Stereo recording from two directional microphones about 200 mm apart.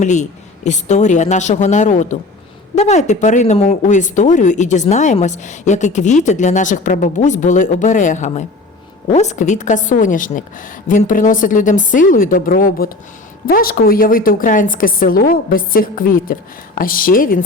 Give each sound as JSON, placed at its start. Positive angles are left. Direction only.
{"t": 0.0, "sound": "a woman's voice", "side_deg": 35}